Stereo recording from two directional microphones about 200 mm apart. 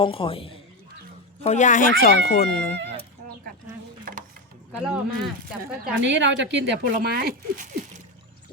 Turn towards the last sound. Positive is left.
turn(degrees=-45)  # may be behind; listen again after turning